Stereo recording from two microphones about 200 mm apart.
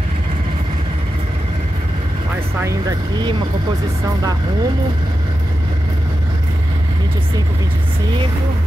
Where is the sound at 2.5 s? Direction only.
20° right (ahead or behind).